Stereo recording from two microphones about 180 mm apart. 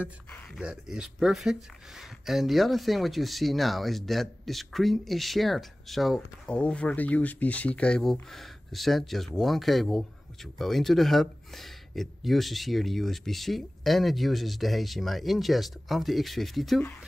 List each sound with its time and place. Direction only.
0.6 s speech: 5° right (ahead or behind)